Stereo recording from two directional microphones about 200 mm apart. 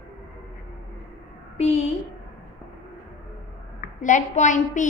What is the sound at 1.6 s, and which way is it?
Speech, 30° left (ahead or behind).